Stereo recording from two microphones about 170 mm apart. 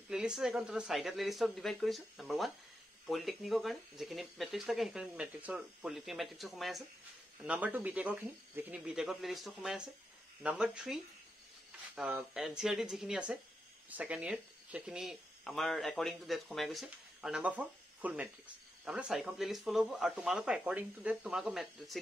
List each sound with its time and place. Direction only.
0.1 s speech: 5° right (ahead or behind)